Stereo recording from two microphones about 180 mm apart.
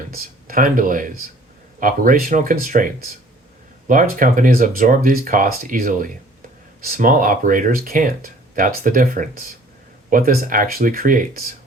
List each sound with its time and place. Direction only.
0.4 s speech: 50° right (ahead or behind)